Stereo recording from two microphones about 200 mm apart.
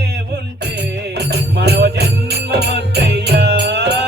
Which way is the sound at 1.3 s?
55° right (ahead or behind).